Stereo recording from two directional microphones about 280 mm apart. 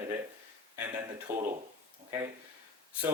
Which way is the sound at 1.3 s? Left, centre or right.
Centre.